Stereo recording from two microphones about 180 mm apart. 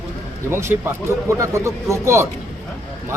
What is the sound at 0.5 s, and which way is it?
Speech, 15° right (ahead or behind).